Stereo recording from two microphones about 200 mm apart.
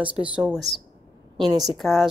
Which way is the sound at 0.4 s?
Centre (ahead or behind).